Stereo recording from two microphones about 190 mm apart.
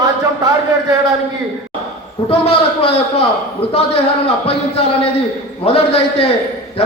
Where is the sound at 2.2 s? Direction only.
30° left (ahead or behind).